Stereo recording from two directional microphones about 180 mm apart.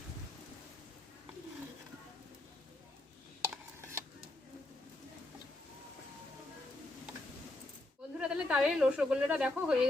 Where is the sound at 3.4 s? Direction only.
15° right (ahead or behind).